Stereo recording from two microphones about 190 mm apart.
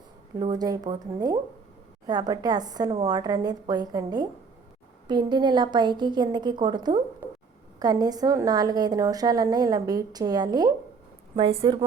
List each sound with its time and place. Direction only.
0.3 s a woman's voice: 20° right (ahead or behind)
7.2 s a sound: 10° right (ahead or behind)
7.8 s a woman's voice: 20° right (ahead or behind)